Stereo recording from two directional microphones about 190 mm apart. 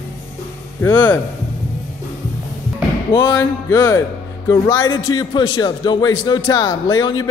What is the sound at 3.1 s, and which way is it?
A man's voice, 15° left (ahead or behind).